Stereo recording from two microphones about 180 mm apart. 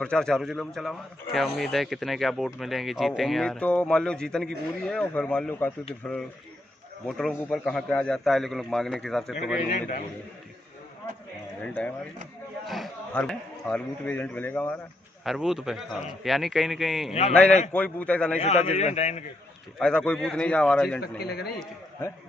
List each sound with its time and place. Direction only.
0.0 s a man's voice: 5° left (ahead or behind)
9.6 s a man's voice: 40° left (ahead or behind)
11.6 s a man's voice: 5° left (ahead or behind)
15.2 s a man's voice: centre (ahead or behind)
18.4 s a man's voice: 40° left (ahead or behind)
19.8 s speech: 5° left (ahead or behind)
21.2 s a man's voice: 60° left (ahead or behind)